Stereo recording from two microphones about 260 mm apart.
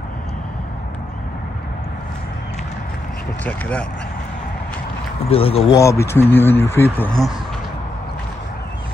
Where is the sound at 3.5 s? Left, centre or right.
Centre.